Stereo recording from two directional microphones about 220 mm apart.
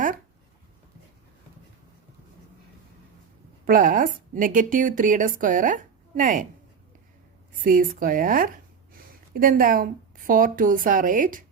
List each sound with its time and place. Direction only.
3.7 s a woman's voice: 40° right (ahead or behind)
7.6 s speech: 40° right (ahead or behind)